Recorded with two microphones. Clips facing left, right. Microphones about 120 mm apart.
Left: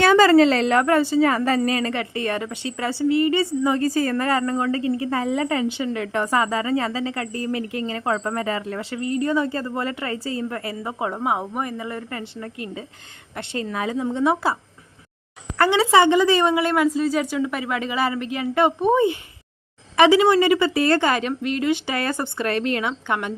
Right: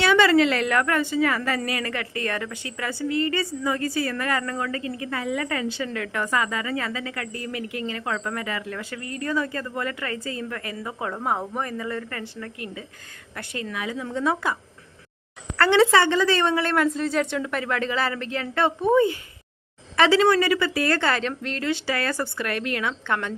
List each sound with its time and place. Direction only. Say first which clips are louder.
0.0 s a woman's voice: left 4 dB; 40° left (ahead or behind); by 3.8 s 25° left (ahead or behind)
3.8 s a woman's voice: left 5 dB; 40° left (ahead or behind); by 11.2 s 25° left (ahead or behind)
11.2 s a woman's voice: left 1 dB; 10° left (ahead or behind); by 14.0 s 35° left (ahead or behind)
14.0 s a woman's voice: left 4 dB; 20° left (ahead or behind)
15.5 s a woman's voice: left 1 dB; 15° left (ahead or behind)